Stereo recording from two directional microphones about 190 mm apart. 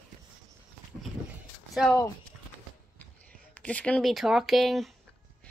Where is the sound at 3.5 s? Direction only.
5° left (ahead or behind).